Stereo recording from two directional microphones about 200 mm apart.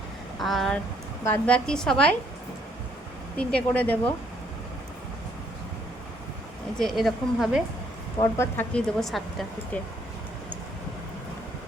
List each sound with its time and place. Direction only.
0.3 s speech: centre (ahead or behind)
3.3 s speech: 5° left (ahead or behind)
6.7 s speech: centre (ahead or behind)
8.2 s speech: 10° left (ahead or behind)